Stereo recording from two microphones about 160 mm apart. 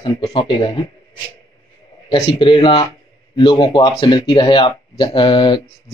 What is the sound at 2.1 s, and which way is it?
Speech, 30° left (ahead or behind).